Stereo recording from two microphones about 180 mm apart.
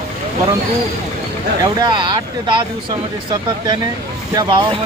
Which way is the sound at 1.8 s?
25° right (ahead or behind).